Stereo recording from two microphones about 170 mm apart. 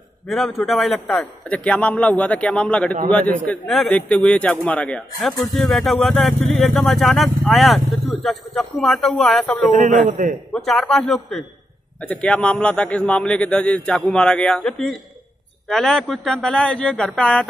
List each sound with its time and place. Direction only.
0.3 s a man's voice: centre (ahead or behind)
9.7 s a man's voice: 50° right (ahead or behind)
10.5 s a man's voice: 5° left (ahead or behind)